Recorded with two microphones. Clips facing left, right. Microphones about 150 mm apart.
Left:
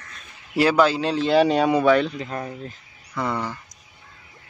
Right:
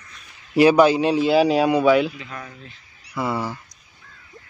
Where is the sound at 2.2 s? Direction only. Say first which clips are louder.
Left 7 dB; 40° left (ahead or behind).